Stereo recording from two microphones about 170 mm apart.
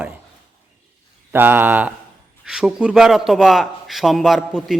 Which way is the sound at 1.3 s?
10° right (ahead or behind).